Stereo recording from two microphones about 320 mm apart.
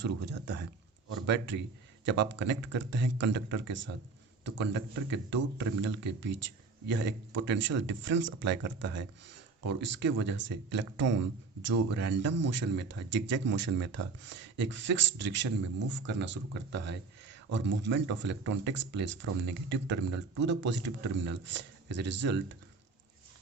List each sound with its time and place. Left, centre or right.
0.0 s speech: right